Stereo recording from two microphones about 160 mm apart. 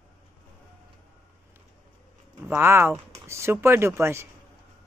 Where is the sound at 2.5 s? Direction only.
15° right (ahead or behind).